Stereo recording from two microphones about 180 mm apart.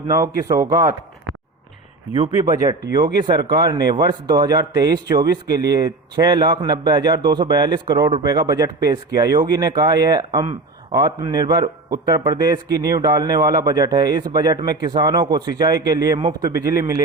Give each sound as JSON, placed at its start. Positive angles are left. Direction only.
{"t": 0.1, "sound": "speech", "side_deg": -20}
{"t": 2.4, "sound": "speech", "side_deg": -20}